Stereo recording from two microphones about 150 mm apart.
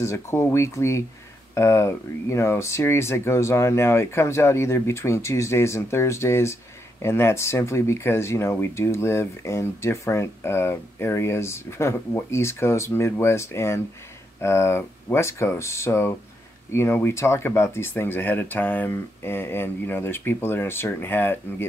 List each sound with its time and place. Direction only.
0.0 s speech: 20° left (ahead or behind)